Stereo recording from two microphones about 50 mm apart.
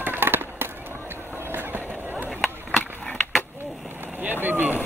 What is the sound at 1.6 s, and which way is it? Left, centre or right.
Skateboard, right.